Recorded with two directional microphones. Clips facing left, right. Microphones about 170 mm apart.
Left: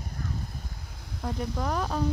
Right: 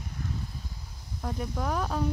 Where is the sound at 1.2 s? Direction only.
5° right (ahead or behind).